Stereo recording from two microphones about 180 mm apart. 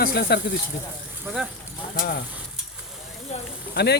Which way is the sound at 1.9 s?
60° left (ahead or behind).